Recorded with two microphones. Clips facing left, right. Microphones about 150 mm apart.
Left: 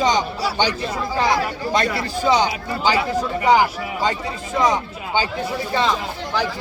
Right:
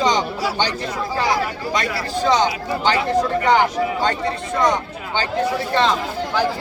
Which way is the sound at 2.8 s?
5° left (ahead or behind).